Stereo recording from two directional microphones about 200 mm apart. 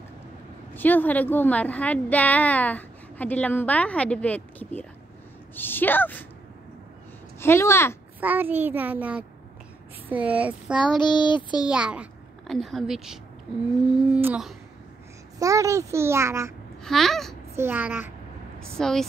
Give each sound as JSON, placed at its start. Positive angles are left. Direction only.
{"t": 0.7, "sound": "a woman's voice", "side_deg": 10}
{"t": 7.3, "sound": "a woman's voice", "side_deg": 10}
{"t": 8.2, "sound": "a child's voice", "side_deg": -10}
{"t": 11.0, "sound": "child singing", "side_deg": 25}
{"t": 11.6, "sound": "a child's voice", "side_deg": -5}
{"t": 16.8, "sound": "speech", "side_deg": 0}
{"t": 17.6, "sound": "a child's voice", "side_deg": -10}
{"t": 18.6, "sound": "speech", "side_deg": 5}